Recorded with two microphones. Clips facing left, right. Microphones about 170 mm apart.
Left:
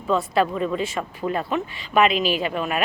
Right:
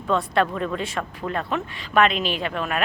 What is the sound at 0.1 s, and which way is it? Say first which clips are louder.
Speech: left 1 dB; 5° left (ahead or behind).